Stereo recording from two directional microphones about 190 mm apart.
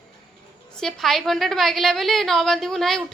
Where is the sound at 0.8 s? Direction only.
Centre (ahead or behind).